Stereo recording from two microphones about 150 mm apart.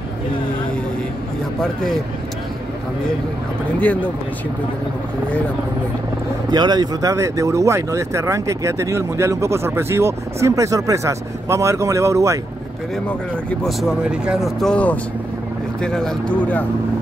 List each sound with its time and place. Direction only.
1.6 s speech: centre (ahead or behind)
3.8 s speech: 10° left (ahead or behind)
6.5 s speech: 30° right (ahead or behind)
13.7 s speech: centre (ahead or behind)